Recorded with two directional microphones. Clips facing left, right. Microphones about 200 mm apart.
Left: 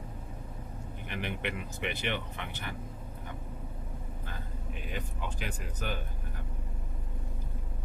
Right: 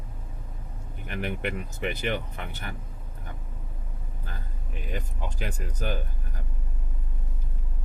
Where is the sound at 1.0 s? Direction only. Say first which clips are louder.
Right 5 dB; 45° right (ahead or behind).